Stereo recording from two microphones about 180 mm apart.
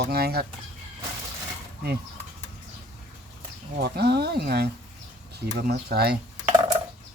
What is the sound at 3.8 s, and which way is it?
Speech, 65° right (ahead or behind).